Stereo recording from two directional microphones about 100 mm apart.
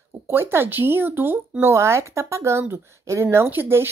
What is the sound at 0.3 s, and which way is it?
Speech, 25° right (ahead or behind).